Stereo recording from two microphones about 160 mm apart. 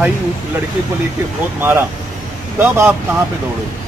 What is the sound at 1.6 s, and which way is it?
Speech, 15° right (ahead or behind).